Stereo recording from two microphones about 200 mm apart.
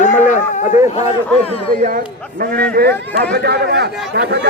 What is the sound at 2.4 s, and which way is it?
A man's voice, 50° right (ahead or behind).